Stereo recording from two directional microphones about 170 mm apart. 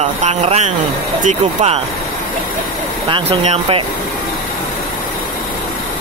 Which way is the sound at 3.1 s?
35° right (ahead or behind).